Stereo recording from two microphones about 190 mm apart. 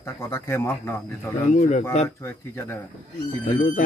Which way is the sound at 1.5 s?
40° left (ahead or behind).